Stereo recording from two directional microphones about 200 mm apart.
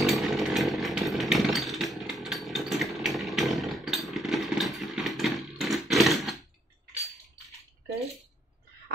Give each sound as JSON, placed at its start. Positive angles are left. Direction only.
{"t": 0.0, "sound": "chainsaw", "side_deg": 0}